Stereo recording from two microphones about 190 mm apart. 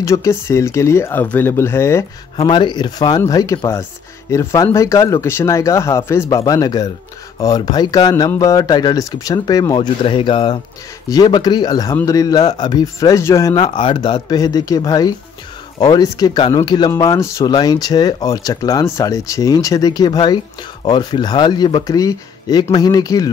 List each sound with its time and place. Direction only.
0.0 s speech: 15° left (ahead or behind)
2.3 s speech: 25° left (ahead or behind)